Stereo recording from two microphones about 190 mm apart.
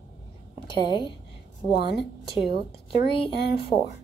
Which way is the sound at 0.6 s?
25° left (ahead or behind).